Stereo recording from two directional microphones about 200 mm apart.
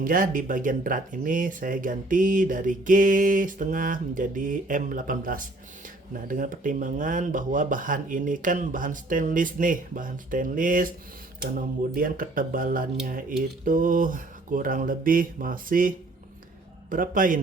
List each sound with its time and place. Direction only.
0.0 s speech: 45° right (ahead or behind)